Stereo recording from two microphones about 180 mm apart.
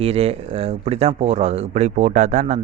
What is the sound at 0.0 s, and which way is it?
Speech, 35° right (ahead or behind).